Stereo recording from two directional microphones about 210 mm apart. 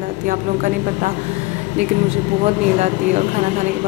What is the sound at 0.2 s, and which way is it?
A woman's voice, 40° right (ahead or behind).